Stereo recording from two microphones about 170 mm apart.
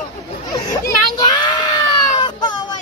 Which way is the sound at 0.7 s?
25° left (ahead or behind).